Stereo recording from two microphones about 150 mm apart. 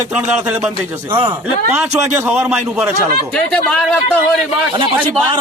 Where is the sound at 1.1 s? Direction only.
35° right (ahead or behind).